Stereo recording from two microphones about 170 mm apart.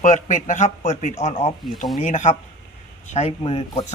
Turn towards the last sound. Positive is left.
turn(degrees=35)  # may be behind; listen again after turning